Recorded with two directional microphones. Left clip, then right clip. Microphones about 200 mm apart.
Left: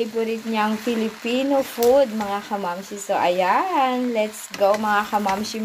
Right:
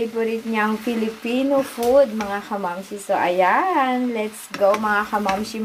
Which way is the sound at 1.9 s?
30° left (ahead or behind).